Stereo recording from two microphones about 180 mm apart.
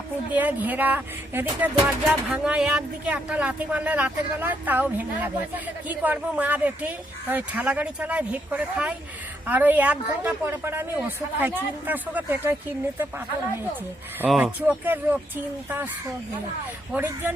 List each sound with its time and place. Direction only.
0.3 s speech: 10° right (ahead or behind)
14.3 s speech: centre (ahead or behind)
16.9 s speech: 10° right (ahead or behind)